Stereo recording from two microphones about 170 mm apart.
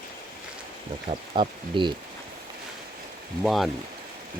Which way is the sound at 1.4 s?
30° right (ahead or behind).